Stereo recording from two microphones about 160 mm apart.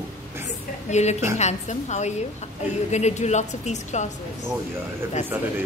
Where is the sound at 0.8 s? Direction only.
45° left (ahead or behind).